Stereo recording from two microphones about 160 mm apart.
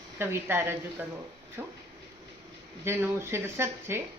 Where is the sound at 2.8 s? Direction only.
15° right (ahead or behind).